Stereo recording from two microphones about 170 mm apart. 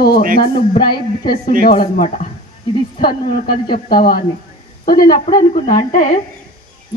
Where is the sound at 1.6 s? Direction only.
60° left (ahead or behind).